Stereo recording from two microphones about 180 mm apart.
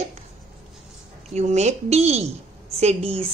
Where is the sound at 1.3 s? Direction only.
40° right (ahead or behind).